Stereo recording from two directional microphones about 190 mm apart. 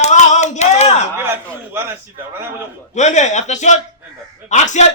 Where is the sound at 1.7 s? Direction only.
10° right (ahead or behind).